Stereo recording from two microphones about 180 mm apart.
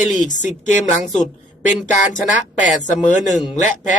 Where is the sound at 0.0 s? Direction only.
40° left (ahead or behind).